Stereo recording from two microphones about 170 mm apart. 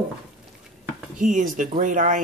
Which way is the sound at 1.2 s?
45° right (ahead or behind).